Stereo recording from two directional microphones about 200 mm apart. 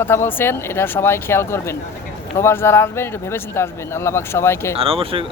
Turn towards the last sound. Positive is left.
turn(degrees=-30)  # may be behind; listen again after turning